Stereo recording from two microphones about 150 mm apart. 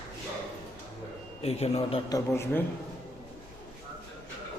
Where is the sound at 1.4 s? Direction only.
45° left (ahead or behind).